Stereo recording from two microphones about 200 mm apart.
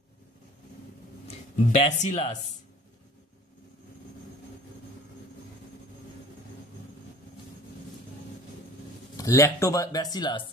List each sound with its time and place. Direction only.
1.2 s speech: 30° left (ahead or behind)
9.1 s speech: 15° left (ahead or behind)